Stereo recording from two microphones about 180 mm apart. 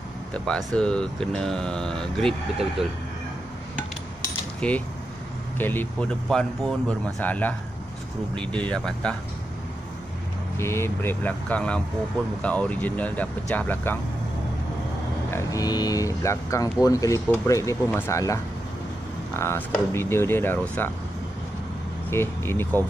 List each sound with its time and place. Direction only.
0.3 s speech: 5° left (ahead or behind)
4.6 s coin: 5° left (ahead or behind)
5.6 s speech: 10° left (ahead or behind)
10.6 s speech: 15° left (ahead or behind)
15.3 s speech: 20° left (ahead or behind)
22.1 s speech: 15° left (ahead or behind)